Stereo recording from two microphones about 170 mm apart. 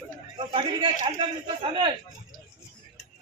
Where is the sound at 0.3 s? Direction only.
30° right (ahead or behind).